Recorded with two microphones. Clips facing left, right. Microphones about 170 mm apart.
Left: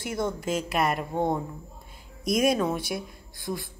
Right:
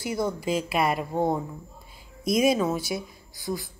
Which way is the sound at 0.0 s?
Centre (ahead or behind).